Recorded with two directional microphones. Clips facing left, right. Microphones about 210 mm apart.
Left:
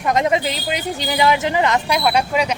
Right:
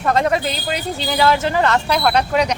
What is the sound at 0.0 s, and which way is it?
Speech, 15° left (ahead or behind).